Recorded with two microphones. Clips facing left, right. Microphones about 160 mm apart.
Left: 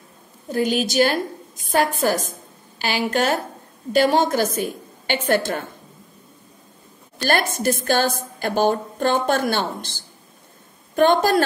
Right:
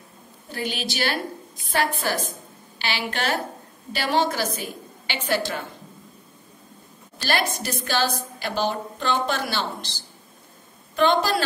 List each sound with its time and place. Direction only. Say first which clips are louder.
0.5 s a woman's voice: left 9 dB; 45° left (ahead or behind)
7.2 s a woman's voice: left 4 dB; 50° left (ahead or behind)